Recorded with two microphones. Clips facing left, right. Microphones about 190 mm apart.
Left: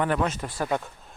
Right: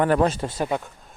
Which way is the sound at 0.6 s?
5° right (ahead or behind).